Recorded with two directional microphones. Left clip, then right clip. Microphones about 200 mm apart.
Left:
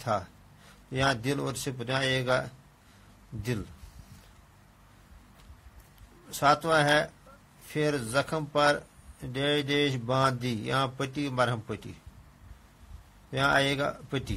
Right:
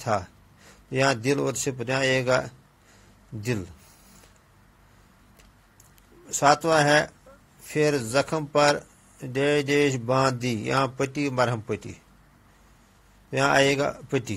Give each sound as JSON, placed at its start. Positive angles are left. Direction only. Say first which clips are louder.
{"t": 0.0, "sound": "a man's voice", "louder": "right 4 dB", "side_deg": -20}
{"t": 6.2, "sound": "a man's voice", "louder": "right 4 dB", "side_deg": -25}
{"t": 13.3, "sound": "a man's voice", "louder": "right 5 dB", "side_deg": -20}